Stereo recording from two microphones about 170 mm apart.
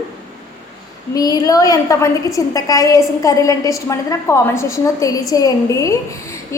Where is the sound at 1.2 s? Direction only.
20° left (ahead or behind).